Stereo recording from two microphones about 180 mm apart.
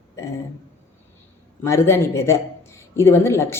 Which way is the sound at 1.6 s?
15° left (ahead or behind).